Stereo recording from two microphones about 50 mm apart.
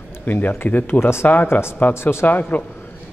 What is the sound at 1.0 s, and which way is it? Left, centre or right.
Speech, left.